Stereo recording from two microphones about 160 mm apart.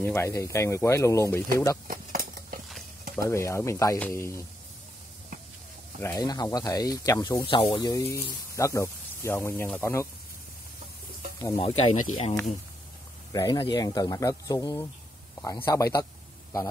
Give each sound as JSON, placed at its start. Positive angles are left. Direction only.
{"t": 0.0, "sound": "speech", "side_deg": 15}
{"t": 1.9, "sound": "a sound", "side_deg": -65}
{"t": 3.2, "sound": "speech", "side_deg": 20}
{"t": 5.9, "sound": "speech", "side_deg": 15}
{"t": 6.2, "sound": "a man's voice", "side_deg": 25}
{"t": 11.3, "sound": "speech", "side_deg": 30}
{"t": 13.3, "sound": "a man's voice", "side_deg": 25}